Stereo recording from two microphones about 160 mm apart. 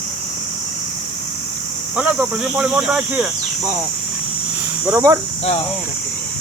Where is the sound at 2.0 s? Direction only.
10° right (ahead or behind).